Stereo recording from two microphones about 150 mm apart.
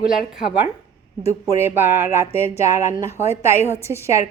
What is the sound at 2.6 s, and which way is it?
Speech, 20° right (ahead or behind).